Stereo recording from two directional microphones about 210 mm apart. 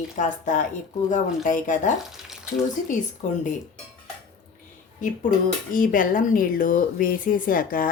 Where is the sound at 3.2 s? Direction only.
35° left (ahead or behind).